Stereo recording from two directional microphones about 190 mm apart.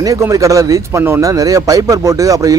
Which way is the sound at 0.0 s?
15° right (ahead or behind).